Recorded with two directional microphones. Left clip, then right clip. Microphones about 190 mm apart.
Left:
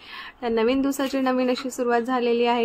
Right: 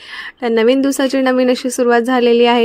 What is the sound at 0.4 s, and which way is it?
A woman's voice, 40° right (ahead or behind).